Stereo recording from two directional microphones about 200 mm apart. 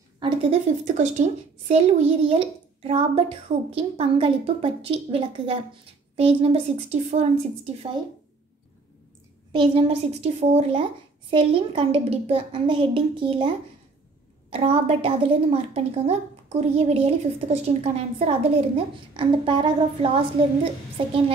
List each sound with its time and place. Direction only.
0.2 s a woman's voice: 30° right (ahead or behind)
9.5 s a woman's voice: 25° right (ahead or behind)
14.5 s a woman's voice: 30° right (ahead or behind)